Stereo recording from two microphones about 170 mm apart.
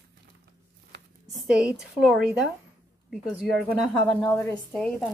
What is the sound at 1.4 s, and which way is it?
Speech, 5° right (ahead or behind).